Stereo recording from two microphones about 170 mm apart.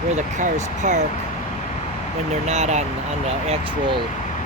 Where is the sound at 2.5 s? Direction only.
40° right (ahead or behind).